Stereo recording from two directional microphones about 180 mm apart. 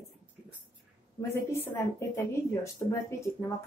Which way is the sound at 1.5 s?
15° left (ahead or behind).